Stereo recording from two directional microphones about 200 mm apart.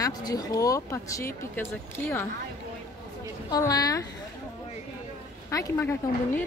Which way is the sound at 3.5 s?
20° left (ahead or behind).